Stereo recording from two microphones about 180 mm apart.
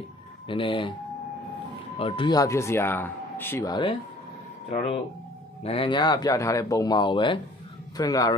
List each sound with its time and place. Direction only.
0.5 s speech: 30° left (ahead or behind)
2.0 s speech: 30° left (ahead or behind)
4.6 s speech: 35° left (ahead or behind)